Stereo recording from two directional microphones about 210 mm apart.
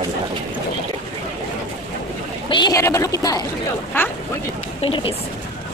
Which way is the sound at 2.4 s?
20° left (ahead or behind).